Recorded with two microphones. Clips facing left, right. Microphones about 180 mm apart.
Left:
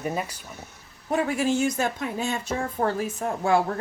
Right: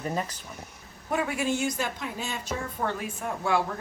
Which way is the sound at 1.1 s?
35° left (ahead or behind).